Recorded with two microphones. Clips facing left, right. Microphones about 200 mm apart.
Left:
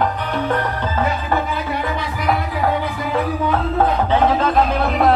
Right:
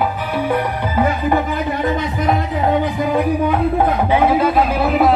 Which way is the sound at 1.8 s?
20° right (ahead or behind).